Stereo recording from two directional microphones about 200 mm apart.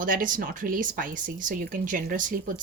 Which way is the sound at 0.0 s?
45° right (ahead or behind).